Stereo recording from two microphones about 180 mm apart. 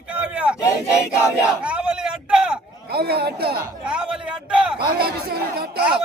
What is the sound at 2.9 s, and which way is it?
Speech, 60° right (ahead or behind).